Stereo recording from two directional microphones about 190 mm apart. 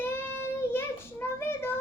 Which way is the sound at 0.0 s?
10° left (ahead or behind).